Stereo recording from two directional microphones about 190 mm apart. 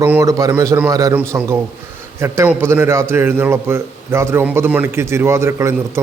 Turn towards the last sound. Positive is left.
turn(degrees=-15)  # may be behind; listen again after turning